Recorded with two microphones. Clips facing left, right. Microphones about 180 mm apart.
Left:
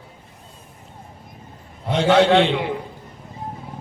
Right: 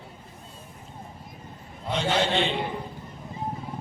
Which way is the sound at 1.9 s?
70° left (ahead or behind).